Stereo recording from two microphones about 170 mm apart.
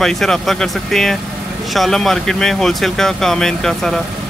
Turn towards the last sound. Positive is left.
turn(degrees=5)  # may be behind; listen again after turning